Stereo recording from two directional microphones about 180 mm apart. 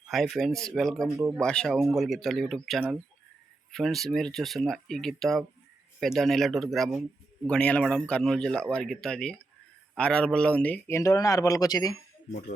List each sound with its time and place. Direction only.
0.1 s a man's voice: centre (ahead or behind); by 11.9 s 20° left (ahead or behind)